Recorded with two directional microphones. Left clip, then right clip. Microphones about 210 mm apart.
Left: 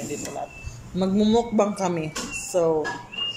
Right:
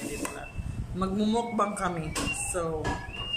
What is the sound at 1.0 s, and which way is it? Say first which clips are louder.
A man's voice: left 7 dB; 15° left (ahead or behind).